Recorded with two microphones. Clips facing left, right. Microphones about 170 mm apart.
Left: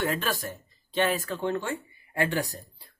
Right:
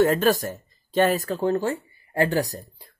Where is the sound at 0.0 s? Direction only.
45° right (ahead or behind).